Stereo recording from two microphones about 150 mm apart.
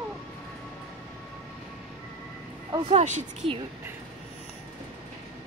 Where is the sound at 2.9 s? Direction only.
45° right (ahead or behind).